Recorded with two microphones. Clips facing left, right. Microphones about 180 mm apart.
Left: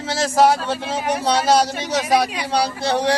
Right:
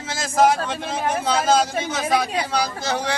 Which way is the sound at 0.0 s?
35° left (ahead or behind).